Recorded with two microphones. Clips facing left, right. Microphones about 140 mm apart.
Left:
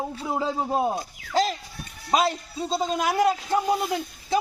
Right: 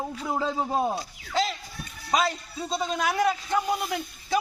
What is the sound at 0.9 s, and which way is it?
Speech, 40° left (ahead or behind).